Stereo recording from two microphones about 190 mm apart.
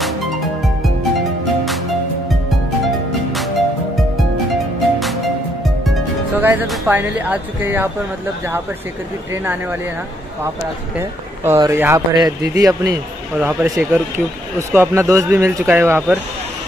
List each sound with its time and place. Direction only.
3.3 s music: centre (ahead or behind)
5.9 s speech: 10° right (ahead or behind)
9.3 s speech: 10° right (ahead or behind)
11.0 s a man's voice: 15° right (ahead or behind)